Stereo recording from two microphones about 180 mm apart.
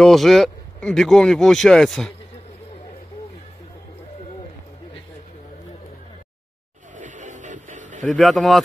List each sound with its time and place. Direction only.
0.0 s speech: centre (ahead or behind)
7.0 s music: 45° right (ahead or behind)
8.1 s speech: centre (ahead or behind)